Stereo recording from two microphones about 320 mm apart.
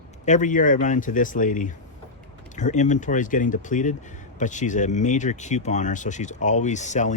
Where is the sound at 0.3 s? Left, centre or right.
Left.